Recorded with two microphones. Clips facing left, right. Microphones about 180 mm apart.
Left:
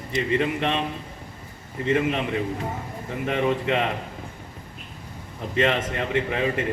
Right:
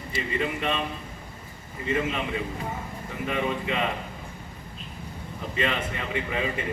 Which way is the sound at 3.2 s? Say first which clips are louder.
Left 4 dB; 65° left (ahead or behind).